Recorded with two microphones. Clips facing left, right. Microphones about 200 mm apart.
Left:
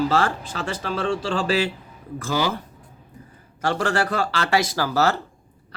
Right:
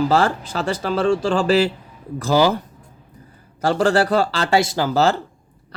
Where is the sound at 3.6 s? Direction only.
30° right (ahead or behind).